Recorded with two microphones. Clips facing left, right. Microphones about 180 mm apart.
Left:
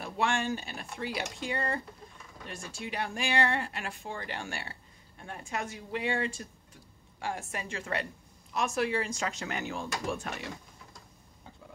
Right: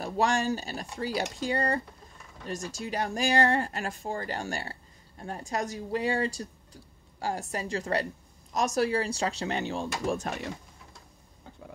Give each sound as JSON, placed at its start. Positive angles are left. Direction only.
{"t": 0.0, "sound": "speech", "side_deg": -40}